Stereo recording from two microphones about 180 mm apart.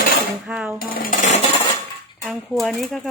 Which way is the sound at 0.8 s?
55° left (ahead or behind).